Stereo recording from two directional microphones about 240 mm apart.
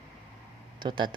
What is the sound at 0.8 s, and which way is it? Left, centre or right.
Speech, centre.